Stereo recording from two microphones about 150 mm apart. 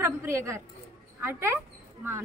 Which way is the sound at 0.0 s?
15° right (ahead or behind).